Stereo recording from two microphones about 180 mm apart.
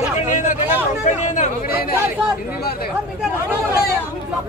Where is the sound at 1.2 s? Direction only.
45° left (ahead or behind).